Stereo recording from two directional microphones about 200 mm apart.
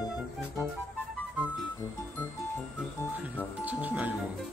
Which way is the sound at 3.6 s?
10° right (ahead or behind).